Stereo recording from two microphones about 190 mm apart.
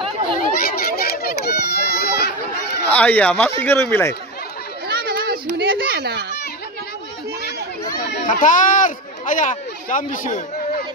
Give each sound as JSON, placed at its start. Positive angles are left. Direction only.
{"t": 0.4, "sound": "children playing", "side_deg": 55}
{"t": 2.9, "sound": "speech", "side_deg": 10}
{"t": 4.8, "sound": "children playing", "side_deg": -55}
{"t": 8.3, "sound": "speech", "side_deg": 45}